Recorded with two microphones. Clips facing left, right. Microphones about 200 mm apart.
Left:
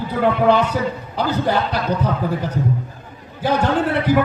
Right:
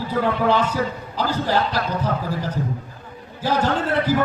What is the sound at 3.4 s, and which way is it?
Speech, 65° left (ahead or behind).